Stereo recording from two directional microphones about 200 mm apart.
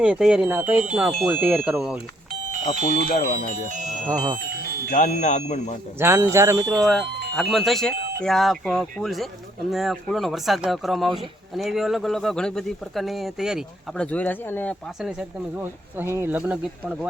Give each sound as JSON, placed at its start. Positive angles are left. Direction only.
{"t": 0.0, "sound": "speech", "side_deg": -5}
{"t": 2.8, "sound": "speech", "side_deg": 45}
{"t": 4.1, "sound": "speech", "side_deg": -20}
{"t": 4.4, "sound": "music", "side_deg": -50}
{"t": 4.9, "sound": "speech", "side_deg": 40}
{"t": 6.0, "sound": "speech", "side_deg": -10}
{"t": 6.7, "sound": "speech", "side_deg": 0}